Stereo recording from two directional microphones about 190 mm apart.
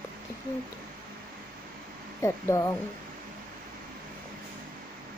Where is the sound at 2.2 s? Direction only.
15° left (ahead or behind).